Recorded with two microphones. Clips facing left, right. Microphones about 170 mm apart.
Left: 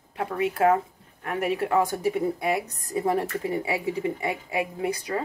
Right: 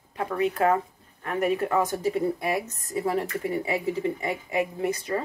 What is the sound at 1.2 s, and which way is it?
A woman's voice, 10° left (ahead or behind).